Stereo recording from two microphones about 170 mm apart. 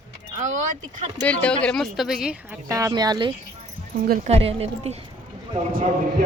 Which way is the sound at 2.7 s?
20° right (ahead or behind).